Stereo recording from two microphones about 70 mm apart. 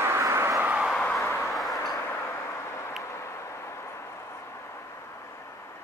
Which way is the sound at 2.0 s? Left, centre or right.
Left.